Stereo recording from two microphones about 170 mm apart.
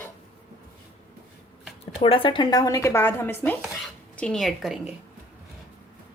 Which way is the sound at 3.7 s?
5° left (ahead or behind).